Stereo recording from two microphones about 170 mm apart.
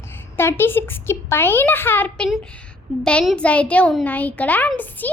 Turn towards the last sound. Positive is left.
turn(degrees=10)  # may be behind; listen again after turning